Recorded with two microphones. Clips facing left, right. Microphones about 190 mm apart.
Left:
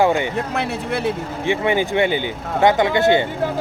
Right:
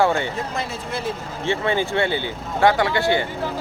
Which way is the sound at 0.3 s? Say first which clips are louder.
Left 5 dB; 65° left (ahead or behind).